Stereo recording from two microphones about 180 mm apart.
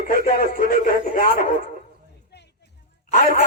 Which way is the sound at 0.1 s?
55° left (ahead or behind).